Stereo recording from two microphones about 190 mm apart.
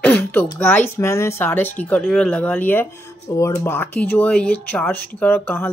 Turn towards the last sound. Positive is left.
turn(degrees=10)  # may be behind; listen again after turning